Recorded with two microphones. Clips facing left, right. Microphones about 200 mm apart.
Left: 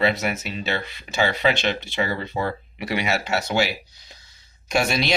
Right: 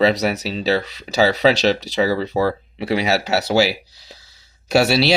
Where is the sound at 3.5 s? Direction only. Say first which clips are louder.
Right 8 dB; 35° right (ahead or behind).